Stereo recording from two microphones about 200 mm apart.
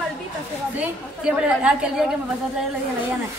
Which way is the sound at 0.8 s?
5° right (ahead or behind).